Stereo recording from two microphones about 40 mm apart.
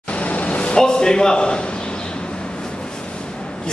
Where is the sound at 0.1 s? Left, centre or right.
Left.